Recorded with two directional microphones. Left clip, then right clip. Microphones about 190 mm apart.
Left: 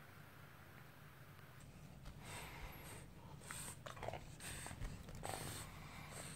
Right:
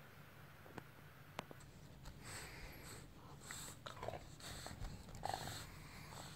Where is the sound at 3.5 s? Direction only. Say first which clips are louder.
Even; 10° left (ahead or behind).